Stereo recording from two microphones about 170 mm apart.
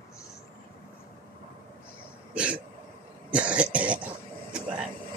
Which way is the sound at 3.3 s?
5° right (ahead or behind).